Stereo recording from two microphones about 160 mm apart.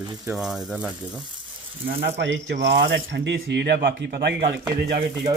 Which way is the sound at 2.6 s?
90° right.